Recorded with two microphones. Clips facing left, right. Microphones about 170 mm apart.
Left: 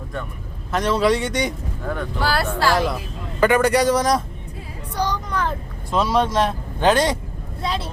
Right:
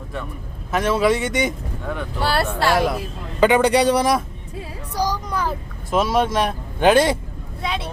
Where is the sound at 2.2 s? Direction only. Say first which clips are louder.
Right 1 dB; 25° right (ahead or behind).